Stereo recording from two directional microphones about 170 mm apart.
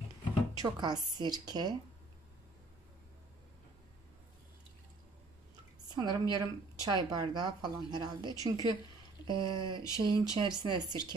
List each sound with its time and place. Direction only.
0.6 s a woman's voice: 25° right (ahead or behind)
5.9 s a woman's voice: 25° right (ahead or behind)